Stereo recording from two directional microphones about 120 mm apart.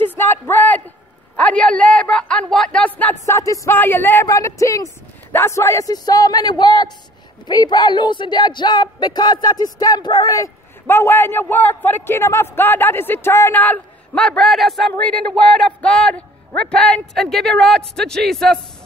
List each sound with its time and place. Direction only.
0.0 s a sound: 15° left (ahead or behind)
1.3 s a man's voice: 10° left (ahead or behind)
3.3 s a man's voice: 25° left (ahead or behind); by 18.6 s 5° left (ahead or behind)